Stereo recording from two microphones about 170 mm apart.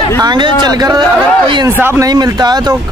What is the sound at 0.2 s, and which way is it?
Speech, 25° right (ahead or behind).